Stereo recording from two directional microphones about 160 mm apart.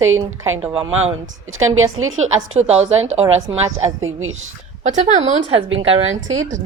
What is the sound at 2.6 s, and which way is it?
Speech, 40° right (ahead or behind).